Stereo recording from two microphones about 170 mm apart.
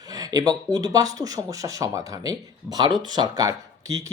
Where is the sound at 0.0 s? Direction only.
20° right (ahead or behind).